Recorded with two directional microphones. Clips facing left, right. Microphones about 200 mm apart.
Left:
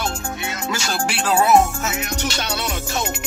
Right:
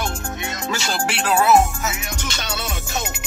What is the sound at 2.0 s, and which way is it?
Music, 55° left (ahead or behind).